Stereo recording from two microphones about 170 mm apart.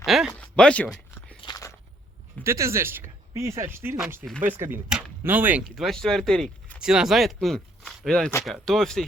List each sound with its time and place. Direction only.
0.0 s a sound: centre (ahead or behind)
1.4 s biting: 25° left (ahead or behind)
2.4 s speech: 15° right (ahead or behind); by 9.0 s centre (ahead or behind)